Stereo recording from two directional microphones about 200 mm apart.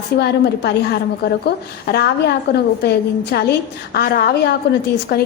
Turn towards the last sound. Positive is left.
turn(degrees=50)  # may be behind; listen again after turning